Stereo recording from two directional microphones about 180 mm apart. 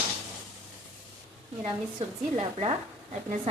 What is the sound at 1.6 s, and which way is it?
Speech, 30° right (ahead or behind).